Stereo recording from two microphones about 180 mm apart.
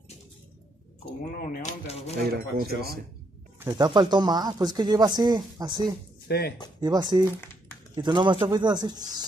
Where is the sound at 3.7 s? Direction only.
25° right (ahead or behind).